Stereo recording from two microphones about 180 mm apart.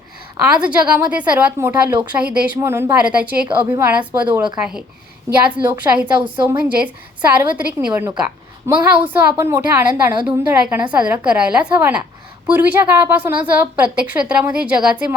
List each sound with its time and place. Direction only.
0.3 s a woman's voice: 10° right (ahead or behind)